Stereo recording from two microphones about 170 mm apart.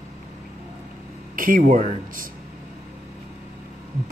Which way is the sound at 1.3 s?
55° right (ahead or behind).